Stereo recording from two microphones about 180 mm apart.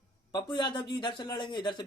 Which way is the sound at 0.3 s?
25° left (ahead or behind).